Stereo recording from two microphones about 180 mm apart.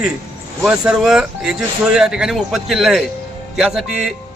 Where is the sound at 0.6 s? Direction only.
5° right (ahead or behind).